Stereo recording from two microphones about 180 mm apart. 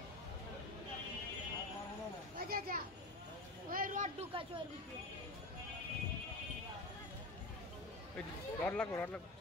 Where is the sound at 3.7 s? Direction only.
50° right (ahead or behind).